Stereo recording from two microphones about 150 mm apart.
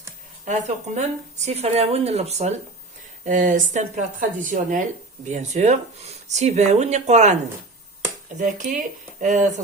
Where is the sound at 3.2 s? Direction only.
60° right (ahead or behind).